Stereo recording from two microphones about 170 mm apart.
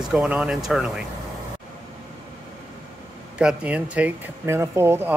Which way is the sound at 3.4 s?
10° right (ahead or behind).